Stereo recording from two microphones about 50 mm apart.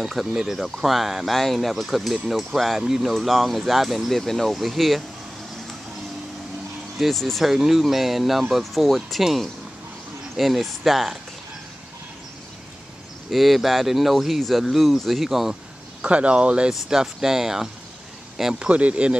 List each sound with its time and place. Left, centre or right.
0.0 s speech: centre
7.0 s speech: centre
7.5 s speech: centre
13.3 s speech: centre
16.0 s speech: right
16.7 s speech: centre
18.6 s speech: right